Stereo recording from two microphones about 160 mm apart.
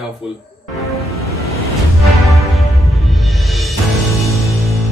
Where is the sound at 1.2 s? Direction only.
20° left (ahead or behind).